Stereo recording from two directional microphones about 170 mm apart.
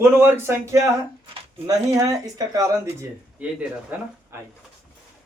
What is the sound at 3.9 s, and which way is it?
Speech, 10° right (ahead or behind).